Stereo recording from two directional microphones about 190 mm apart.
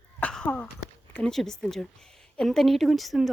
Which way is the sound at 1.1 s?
5° left (ahead or behind).